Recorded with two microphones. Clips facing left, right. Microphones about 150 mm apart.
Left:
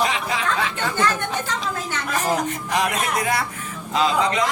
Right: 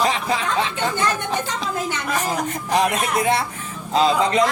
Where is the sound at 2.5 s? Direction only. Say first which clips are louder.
Right 3 dB; 30° right (ahead or behind).